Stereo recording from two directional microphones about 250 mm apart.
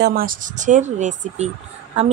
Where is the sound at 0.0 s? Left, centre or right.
Right.